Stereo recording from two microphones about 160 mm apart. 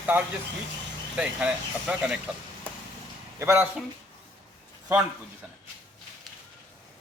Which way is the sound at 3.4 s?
15° right (ahead or behind).